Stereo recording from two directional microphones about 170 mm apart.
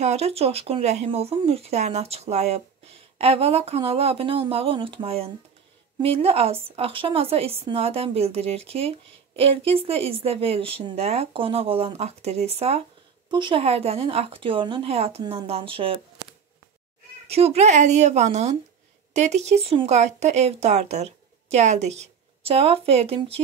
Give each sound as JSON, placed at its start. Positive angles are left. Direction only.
{"t": 0.0, "sound": "speech", "side_deg": -40}
{"t": 17.3, "sound": "a woman's voice", "side_deg": -35}